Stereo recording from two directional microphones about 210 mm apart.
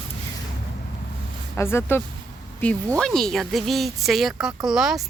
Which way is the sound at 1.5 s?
10° left (ahead or behind).